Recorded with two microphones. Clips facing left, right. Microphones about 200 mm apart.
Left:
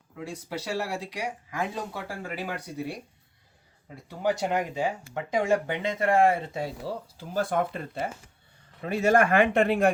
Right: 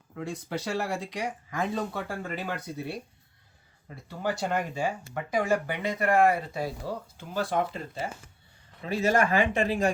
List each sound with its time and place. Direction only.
0.2 s speech: 10° left (ahead or behind); by 6.7 s 25° left (ahead or behind)
7.2 s speech: 50° left (ahead or behind)